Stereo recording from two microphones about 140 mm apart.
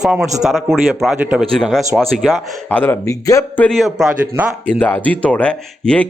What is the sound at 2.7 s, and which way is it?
Speech, 10° left (ahead or behind).